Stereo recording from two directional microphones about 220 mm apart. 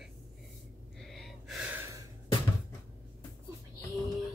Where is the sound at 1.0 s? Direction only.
Centre (ahead or behind).